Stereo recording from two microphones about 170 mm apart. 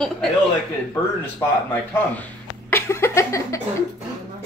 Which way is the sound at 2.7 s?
15° left (ahead or behind).